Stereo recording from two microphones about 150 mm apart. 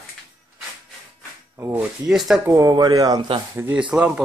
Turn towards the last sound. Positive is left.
turn(degrees=-5)  # may be behind; listen again after turning